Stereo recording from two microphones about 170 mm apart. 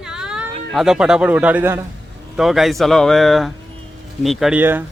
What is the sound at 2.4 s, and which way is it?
Speech, centre (ahead or behind).